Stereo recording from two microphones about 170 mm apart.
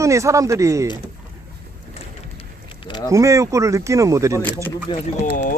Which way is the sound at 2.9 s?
25° left (ahead or behind).